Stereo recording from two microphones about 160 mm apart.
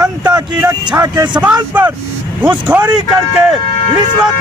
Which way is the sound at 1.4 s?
10° right (ahead or behind).